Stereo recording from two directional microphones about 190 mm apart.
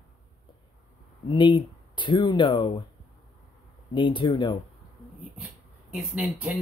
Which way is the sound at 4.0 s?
25° left (ahead or behind).